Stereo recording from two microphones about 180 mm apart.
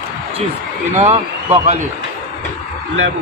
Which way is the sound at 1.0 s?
35° right (ahead or behind).